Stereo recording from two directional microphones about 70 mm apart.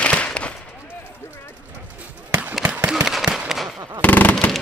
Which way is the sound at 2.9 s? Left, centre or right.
Centre.